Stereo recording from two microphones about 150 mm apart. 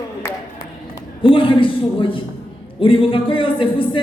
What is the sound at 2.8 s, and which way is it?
Music, 35° left (ahead or behind).